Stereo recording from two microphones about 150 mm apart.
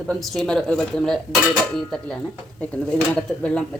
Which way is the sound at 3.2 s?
5° left (ahead or behind).